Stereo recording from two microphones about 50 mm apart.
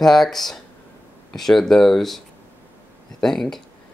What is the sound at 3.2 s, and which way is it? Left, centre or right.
Speech, centre.